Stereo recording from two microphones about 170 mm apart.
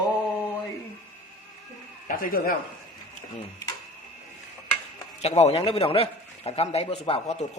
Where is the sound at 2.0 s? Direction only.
55° left (ahead or behind).